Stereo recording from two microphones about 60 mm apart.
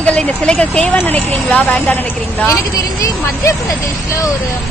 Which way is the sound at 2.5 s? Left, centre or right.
Left.